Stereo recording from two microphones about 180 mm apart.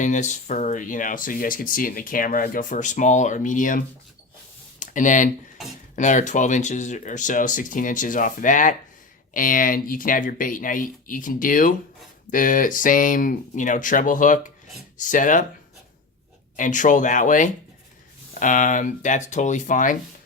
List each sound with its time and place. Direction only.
0.0 s speech: 40° left (ahead or behind)
16.6 s speech: 45° left (ahead or behind)